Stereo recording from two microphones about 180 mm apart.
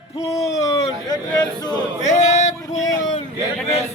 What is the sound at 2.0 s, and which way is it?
Yodeling, 40° left (ahead or behind).